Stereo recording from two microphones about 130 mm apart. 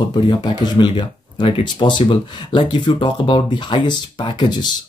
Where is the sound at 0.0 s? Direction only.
35° left (ahead or behind).